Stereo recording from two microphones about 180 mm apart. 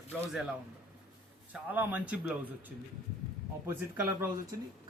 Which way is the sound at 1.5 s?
10° right (ahead or behind).